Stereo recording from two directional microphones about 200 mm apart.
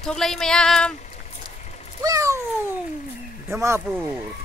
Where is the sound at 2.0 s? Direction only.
15° right (ahead or behind).